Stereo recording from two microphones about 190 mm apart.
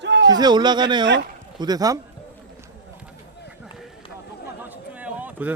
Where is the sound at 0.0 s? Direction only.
65° right (ahead or behind).